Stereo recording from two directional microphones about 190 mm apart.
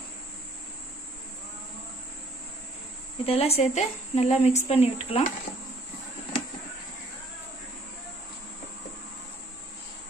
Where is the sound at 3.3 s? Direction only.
30° left (ahead or behind).